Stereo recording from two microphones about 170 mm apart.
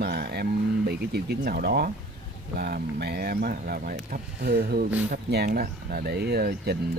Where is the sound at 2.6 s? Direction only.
70° right (ahead or behind).